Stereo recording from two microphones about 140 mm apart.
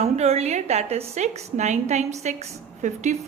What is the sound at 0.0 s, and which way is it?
A woman's voice, 50° right (ahead or behind).